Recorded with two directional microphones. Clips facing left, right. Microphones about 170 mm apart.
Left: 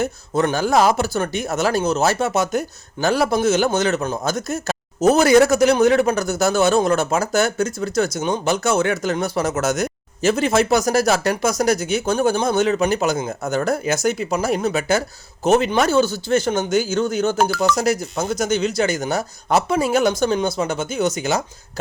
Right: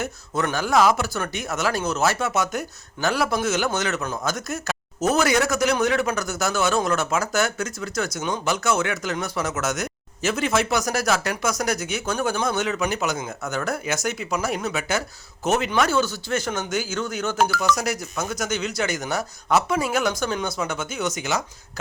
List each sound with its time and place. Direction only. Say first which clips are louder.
0.0 s speech: left 6 dB; 30° left (ahead or behind)